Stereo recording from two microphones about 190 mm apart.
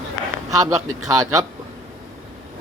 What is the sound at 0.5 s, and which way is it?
Speech, 20° right (ahead or behind).